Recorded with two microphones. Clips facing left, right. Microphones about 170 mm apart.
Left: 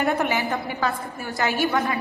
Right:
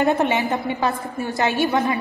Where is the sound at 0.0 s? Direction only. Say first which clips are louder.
Right 4 dB; 25° right (ahead or behind).